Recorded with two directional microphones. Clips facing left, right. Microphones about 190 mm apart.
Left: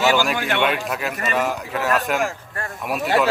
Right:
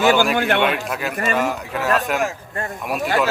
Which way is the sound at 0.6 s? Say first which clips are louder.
Right 1 dB; centre (ahead or behind).